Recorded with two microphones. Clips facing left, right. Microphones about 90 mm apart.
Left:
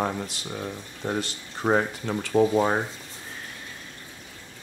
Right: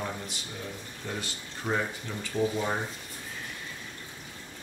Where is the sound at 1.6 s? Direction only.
45° left (ahead or behind).